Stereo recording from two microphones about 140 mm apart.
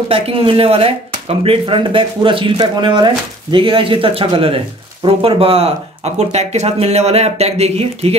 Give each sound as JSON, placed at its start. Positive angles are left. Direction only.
{"t": 0.1, "sound": "speech", "side_deg": -40}